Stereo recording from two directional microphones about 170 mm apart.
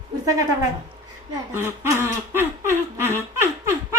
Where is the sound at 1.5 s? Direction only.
15° right (ahead or behind).